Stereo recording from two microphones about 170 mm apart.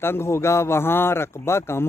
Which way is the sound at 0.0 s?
15° left (ahead or behind).